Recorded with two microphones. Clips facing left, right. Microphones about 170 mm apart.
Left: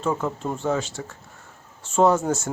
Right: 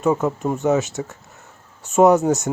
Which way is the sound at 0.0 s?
15° right (ahead or behind).